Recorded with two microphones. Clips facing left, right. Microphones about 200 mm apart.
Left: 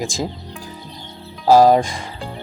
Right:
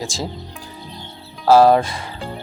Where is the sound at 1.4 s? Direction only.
15° left (ahead or behind).